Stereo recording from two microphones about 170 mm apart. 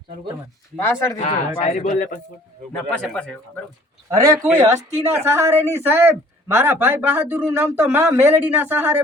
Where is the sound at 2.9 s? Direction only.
5° left (ahead or behind).